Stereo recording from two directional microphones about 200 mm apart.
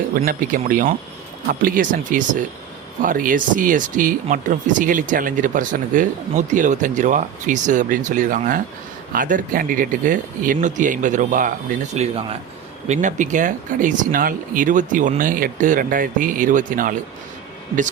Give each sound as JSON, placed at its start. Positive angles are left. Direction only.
{"t": 0.3, "sound": "speech", "side_deg": -40}
{"t": 11.9, "sound": "speech", "side_deg": -30}